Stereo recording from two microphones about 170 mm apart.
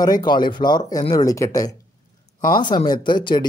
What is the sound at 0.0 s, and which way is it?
Speech, 25° left (ahead or behind).